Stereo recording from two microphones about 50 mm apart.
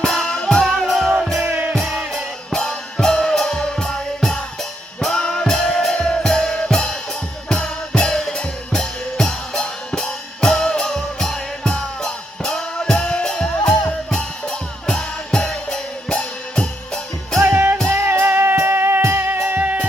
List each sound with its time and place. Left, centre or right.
0.0 s music: centre
0.6 s music: centre
1.8 s music: centre
2.5 s music: centre
17.4 s music: right
17.8 s music: right
18.1 s music: right
19.3 s music: right